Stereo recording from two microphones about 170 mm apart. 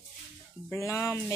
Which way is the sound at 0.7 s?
15° left (ahead or behind).